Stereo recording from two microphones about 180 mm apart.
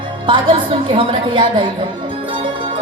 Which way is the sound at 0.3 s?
30° right (ahead or behind).